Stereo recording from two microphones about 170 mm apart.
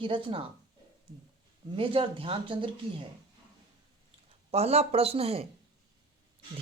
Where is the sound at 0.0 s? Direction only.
30° right (ahead or behind).